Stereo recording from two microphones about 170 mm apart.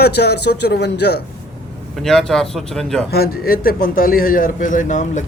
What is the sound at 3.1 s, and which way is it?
A man's voice, 65° left (ahead or behind).